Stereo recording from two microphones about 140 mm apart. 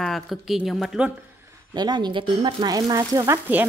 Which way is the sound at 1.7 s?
30° right (ahead or behind).